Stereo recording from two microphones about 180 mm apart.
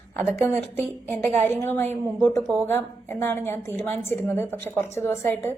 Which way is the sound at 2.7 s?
15° left (ahead or behind).